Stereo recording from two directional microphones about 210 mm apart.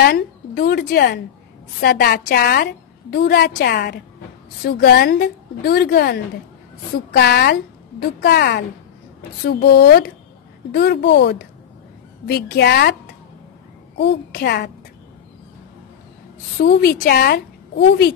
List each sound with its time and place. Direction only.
0.0 s a woman's voice: 50° left (ahead or behind)
13.9 s a woman's voice: 55° left (ahead or behind)
16.5 s a woman's voice: 45° left (ahead or behind)